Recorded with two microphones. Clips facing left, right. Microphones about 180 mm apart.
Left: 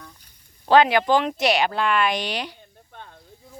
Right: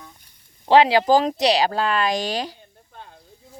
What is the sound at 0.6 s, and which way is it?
Speech, 25° right (ahead or behind).